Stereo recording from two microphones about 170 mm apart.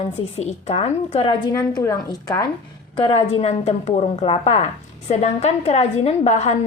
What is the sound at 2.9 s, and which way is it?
A woman's voice, 35° left (ahead or behind).